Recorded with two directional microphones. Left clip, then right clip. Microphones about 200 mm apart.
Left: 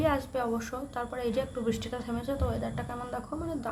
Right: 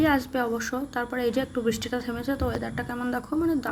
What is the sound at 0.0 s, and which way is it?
A woman's voice, 15° right (ahead or behind).